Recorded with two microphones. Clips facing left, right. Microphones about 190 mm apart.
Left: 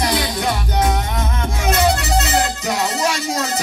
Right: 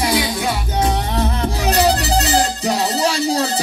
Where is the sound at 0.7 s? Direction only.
30° right (ahead or behind).